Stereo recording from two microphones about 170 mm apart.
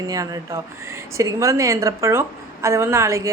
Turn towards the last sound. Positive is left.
turn(degrees=-15)  # may be behind; listen again after turning